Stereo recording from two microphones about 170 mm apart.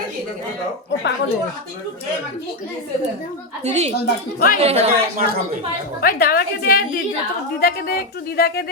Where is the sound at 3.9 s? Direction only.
65° left (ahead or behind).